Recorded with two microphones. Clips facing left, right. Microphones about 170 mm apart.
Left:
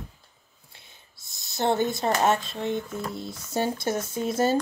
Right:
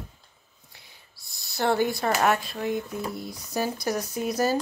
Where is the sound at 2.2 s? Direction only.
20° left (ahead or behind).